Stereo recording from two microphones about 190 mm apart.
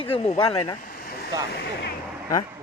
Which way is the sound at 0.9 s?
50° left (ahead or behind).